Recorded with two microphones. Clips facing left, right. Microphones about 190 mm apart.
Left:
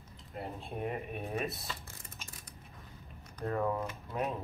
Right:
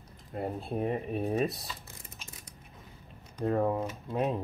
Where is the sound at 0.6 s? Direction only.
35° right (ahead or behind).